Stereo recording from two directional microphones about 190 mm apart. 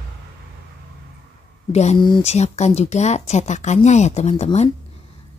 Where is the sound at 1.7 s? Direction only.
35° left (ahead or behind).